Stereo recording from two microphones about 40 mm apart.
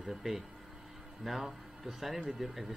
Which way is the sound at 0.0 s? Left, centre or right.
Centre.